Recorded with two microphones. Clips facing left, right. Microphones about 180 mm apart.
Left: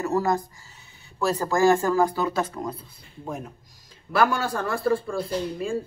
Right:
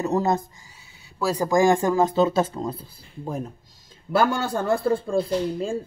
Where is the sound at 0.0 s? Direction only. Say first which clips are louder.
Right 1 dB; 20° right (ahead or behind).